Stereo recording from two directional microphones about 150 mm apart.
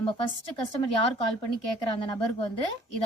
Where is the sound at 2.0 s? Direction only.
30° left (ahead or behind).